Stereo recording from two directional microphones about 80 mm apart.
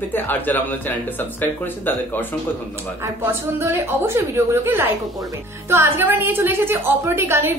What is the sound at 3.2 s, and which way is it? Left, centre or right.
A woman's voice, right.